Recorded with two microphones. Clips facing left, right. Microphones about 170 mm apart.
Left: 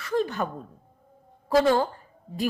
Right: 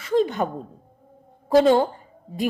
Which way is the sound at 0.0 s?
20° right (ahead or behind).